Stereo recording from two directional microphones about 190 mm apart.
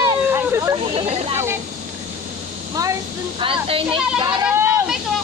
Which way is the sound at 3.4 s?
30° right (ahead or behind).